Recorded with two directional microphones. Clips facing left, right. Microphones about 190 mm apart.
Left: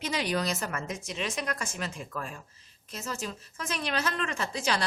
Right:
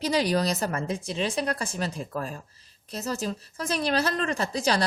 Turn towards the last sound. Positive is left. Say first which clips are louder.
# right 5 dB
turn(degrees=-35)  # may be behind; listen again after turning